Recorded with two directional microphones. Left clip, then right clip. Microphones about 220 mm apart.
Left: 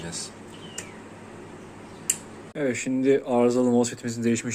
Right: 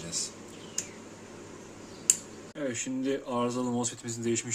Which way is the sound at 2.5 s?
20° left (ahead or behind).